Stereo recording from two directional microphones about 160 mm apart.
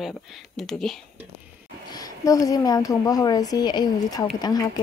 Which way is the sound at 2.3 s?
20° left (ahead or behind).